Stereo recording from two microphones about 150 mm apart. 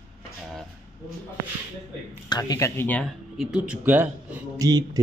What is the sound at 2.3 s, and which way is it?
Speech, 25° left (ahead or behind).